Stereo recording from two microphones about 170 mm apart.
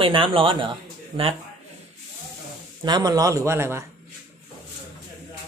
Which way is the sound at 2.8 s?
25° right (ahead or behind).